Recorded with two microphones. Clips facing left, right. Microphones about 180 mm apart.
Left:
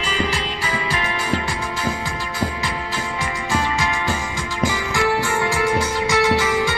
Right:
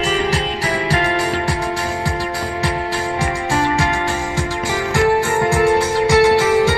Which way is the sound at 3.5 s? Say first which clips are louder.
Right 4 dB; 65° right (ahead or behind).